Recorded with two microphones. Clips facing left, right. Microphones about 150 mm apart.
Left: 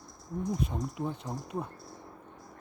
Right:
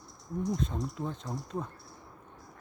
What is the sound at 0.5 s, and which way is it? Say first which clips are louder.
Speech: even; 15° left (ahead or behind).